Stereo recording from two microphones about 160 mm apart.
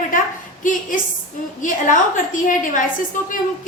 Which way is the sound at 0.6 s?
55° left (ahead or behind).